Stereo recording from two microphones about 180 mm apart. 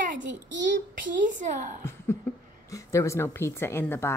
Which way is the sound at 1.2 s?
45° right (ahead or behind).